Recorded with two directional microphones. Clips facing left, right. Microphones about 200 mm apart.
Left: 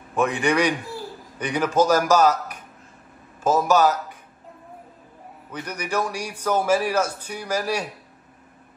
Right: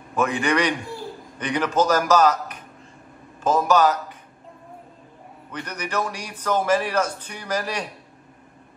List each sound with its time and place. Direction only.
0.4 s a man's voice: 10° left (ahead or behind)
5.5 s a man's voice: 10° left (ahead or behind)